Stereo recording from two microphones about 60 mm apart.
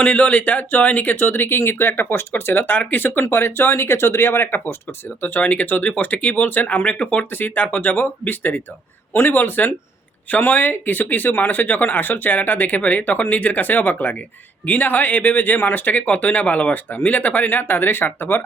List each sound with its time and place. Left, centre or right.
0.0 s speech: left
7.3 s speech: left